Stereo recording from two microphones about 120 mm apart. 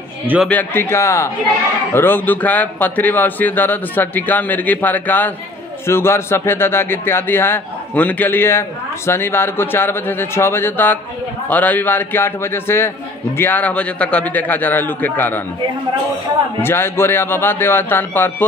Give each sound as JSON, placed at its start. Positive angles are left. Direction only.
{"t": 0.5, "sound": "a man's voice", "side_deg": 15}
{"t": 16.6, "sound": "a man's voice", "side_deg": 20}